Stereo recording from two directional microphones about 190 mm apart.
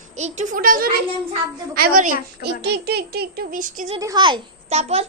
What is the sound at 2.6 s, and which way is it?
A child's voice, 60° right (ahead or behind).